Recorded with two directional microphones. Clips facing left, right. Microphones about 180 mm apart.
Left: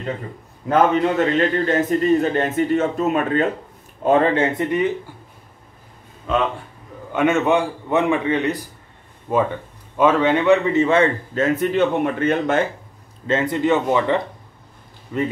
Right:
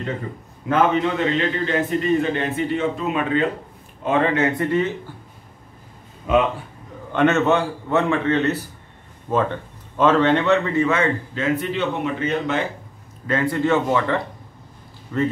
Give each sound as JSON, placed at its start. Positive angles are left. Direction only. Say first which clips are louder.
{"t": 1.0, "sound": "a man's voice", "louder": "left 3 dB", "side_deg": 45}
{"t": 6.3, "sound": "a man's voice", "louder": "right 3 dB", "side_deg": -10}
{"t": 7.1, "sound": "a man's voice", "louder": "even", "side_deg": 10}
{"t": 11.3, "sound": "a man's voice", "louder": "left 8 dB", "side_deg": 45}
{"t": 13.3, "sound": "a man's voice", "louder": "left 1 dB", "side_deg": 20}